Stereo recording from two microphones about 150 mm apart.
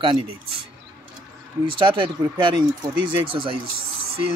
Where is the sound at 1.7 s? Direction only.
35° right (ahead or behind).